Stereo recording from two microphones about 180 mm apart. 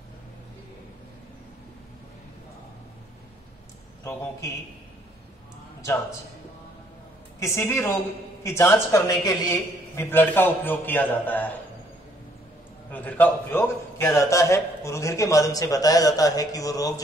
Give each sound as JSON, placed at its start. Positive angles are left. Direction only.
{"t": 7.3, "sound": "a man's voice", "side_deg": 15}
{"t": 12.9, "sound": "a man's voice", "side_deg": 10}